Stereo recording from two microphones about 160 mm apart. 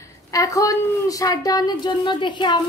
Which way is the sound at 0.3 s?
20° left (ahead or behind).